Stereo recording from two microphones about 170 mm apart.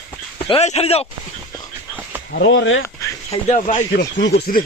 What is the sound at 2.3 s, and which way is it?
Speech, 90° left.